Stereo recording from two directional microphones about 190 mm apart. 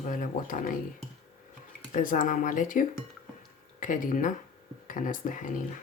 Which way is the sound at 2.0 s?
45° left (ahead or behind).